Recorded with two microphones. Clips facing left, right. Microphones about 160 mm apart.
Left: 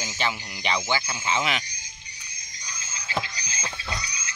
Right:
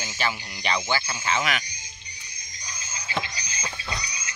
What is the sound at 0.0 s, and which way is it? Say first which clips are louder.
Speech: even; 15° left (ahead or behind).